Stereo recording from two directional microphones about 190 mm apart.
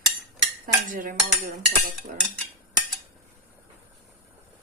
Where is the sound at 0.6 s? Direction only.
45° right (ahead or behind).